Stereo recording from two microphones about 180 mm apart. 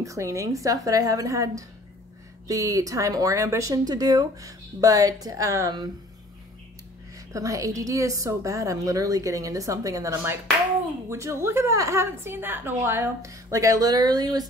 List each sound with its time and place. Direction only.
0.0 s a woman's voice: 15° right (ahead or behind)
7.3 s a woman's voice: 20° right (ahead or behind)